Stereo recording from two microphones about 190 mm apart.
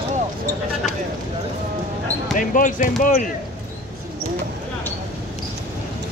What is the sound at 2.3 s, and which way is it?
Speech, 45° left (ahead or behind).